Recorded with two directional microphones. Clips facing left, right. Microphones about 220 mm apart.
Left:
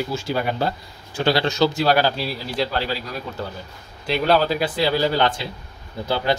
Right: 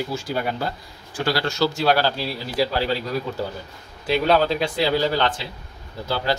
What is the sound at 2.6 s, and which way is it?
Speech, 5° right (ahead or behind).